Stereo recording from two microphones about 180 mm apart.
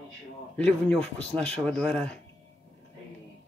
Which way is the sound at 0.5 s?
5° left (ahead or behind).